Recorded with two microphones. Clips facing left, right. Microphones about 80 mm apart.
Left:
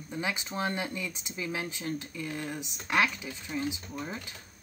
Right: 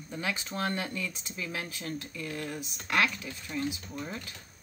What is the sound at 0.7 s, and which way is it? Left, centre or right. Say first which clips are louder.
Speech: even; centre.